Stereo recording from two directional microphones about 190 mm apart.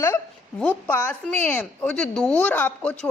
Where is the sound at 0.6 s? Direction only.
10° left (ahead or behind).